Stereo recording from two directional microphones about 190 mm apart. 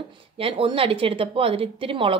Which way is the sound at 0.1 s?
30° right (ahead or behind).